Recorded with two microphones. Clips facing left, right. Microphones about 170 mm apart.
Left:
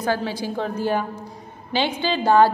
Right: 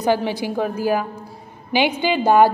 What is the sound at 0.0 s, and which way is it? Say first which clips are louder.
A woman's voice: right 4 dB; 15° right (ahead or behind).